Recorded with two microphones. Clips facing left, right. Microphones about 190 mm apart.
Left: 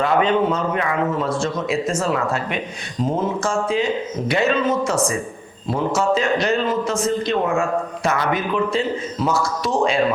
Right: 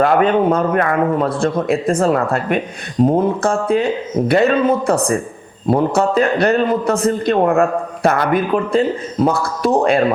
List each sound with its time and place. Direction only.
0.0 s a man's voice: 55° right (ahead or behind)